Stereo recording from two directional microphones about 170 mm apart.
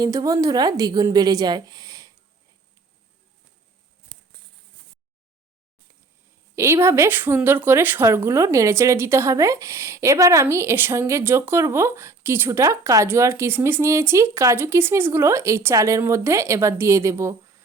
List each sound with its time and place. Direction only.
0.0 s a woman's voice: 20° right (ahead or behind)
6.6 s a woman's voice: 15° right (ahead or behind)